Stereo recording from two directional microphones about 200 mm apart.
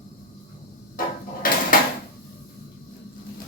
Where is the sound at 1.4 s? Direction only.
45° left (ahead or behind).